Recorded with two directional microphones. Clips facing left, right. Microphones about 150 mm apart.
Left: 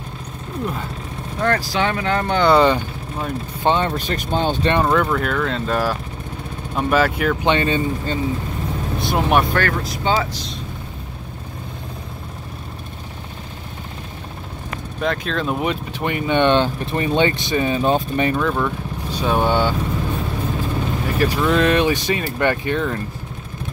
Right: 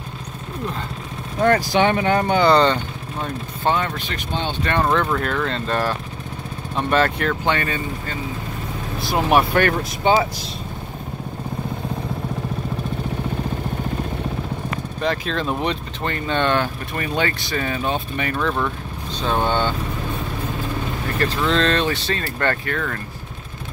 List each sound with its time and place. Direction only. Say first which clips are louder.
1.4 s speech: right 3 dB; 20° right (ahead or behind)
2.4 s speech: left 4 dB; 5° left (ahead or behind)
3.6 s speech: left 3 dB; 30° left (ahead or behind)
4.8 s speech: left 2 dB; 5° left (ahead or behind)
7.4 s speech: left 4 dB; 25° left (ahead or behind)
8.9 s speech: even; centre (ahead or behind)
9.6 s speech: right 2 dB; 15° right (ahead or behind)
15.0 s speech: left 1 dB; centre (ahead or behind); by 17.8 s 20° left (ahead or behind)
17.8 s speech: left 6 dB; 35° left (ahead or behind)
18.3 s speech: left 2 dB; 5° left (ahead or behind)
21.1 s speech: left 2 dB; 10° left (ahead or behind)